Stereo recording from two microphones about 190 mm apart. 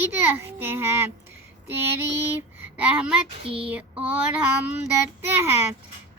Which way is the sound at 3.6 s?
5° right (ahead or behind).